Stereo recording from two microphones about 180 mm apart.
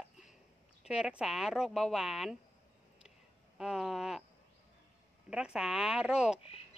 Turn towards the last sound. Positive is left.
turn(degrees=-5)  # may be behind; listen again after turning